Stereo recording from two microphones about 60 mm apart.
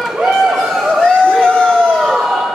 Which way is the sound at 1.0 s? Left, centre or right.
Centre.